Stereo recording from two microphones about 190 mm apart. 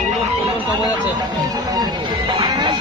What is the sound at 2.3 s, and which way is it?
Music, 25° right (ahead or behind).